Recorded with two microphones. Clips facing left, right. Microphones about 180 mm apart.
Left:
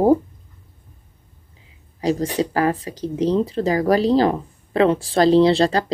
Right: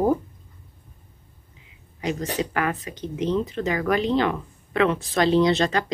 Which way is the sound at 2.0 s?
35° left (ahead or behind).